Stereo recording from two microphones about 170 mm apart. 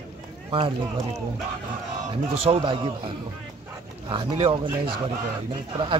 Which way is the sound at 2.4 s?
35° right (ahead or behind).